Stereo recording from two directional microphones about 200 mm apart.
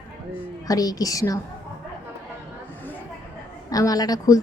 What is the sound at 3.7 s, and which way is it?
Speech, 20° left (ahead or behind).